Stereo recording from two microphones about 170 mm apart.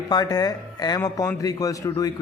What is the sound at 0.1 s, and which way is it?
Speech, 25° left (ahead or behind).